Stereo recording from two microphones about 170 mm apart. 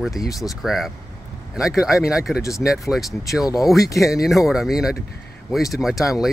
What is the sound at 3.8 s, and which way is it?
Speech, 20° left (ahead or behind).